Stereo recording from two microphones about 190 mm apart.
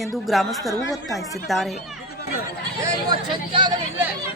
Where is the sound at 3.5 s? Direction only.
25° right (ahead or behind).